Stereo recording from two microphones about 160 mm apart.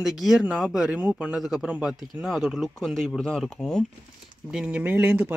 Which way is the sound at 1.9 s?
25° left (ahead or behind).